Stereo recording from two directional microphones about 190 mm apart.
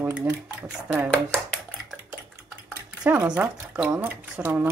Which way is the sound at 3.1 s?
10° right (ahead or behind).